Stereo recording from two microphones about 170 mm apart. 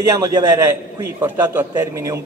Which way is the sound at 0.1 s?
20° right (ahead or behind).